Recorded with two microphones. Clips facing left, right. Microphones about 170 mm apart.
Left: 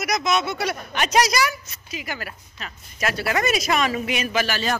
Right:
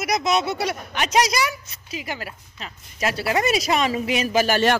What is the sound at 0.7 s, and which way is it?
A woman's voice, 20° right (ahead or behind).